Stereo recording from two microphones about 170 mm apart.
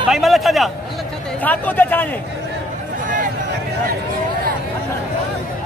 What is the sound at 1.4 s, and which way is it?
Speech, 10° left (ahead or behind).